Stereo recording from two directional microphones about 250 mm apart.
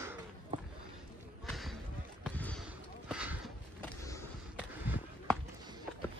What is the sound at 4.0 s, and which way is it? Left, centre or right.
Skateboard, centre.